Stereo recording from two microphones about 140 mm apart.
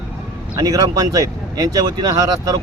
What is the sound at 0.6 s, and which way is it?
Speech, 25° right (ahead or behind).